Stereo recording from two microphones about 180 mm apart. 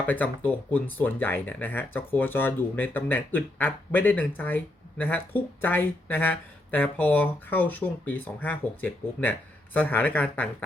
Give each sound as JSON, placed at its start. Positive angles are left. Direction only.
{"t": 0.1, "sound": "speech", "side_deg": 10}